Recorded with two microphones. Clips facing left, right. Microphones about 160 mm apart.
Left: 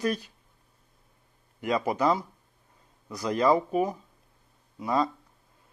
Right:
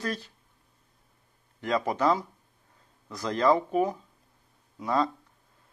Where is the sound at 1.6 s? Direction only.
10° left (ahead or behind).